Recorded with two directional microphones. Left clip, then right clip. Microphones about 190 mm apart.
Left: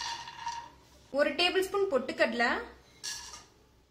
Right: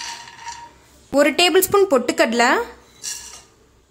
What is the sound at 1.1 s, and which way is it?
A woman's voice, 65° right (ahead or behind).